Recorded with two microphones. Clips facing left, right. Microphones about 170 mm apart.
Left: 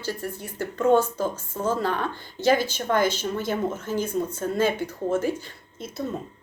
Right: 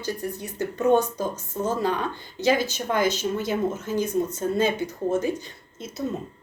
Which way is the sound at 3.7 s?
15° right (ahead or behind).